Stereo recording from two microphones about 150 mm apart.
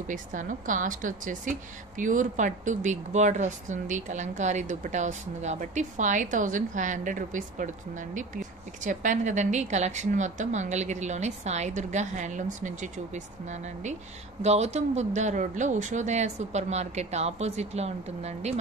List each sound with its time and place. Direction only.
0.1 s a woman's voice: 60° right (ahead or behind)